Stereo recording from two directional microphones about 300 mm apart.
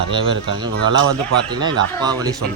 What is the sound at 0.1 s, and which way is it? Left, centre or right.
Speech, centre.